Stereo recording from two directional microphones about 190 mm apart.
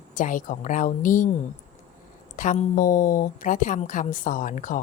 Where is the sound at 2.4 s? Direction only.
40° left (ahead or behind).